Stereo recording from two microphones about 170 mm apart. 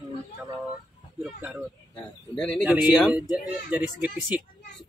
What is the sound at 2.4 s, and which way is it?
Speech, 5° left (ahead or behind).